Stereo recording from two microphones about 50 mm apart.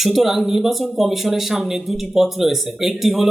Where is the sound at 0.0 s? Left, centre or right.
Centre.